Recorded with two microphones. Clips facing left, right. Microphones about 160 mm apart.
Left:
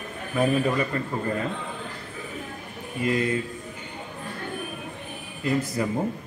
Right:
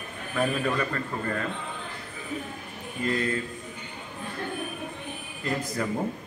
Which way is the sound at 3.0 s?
10° left (ahead or behind).